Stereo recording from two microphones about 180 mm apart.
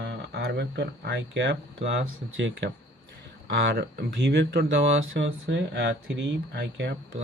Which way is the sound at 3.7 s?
60° right (ahead or behind).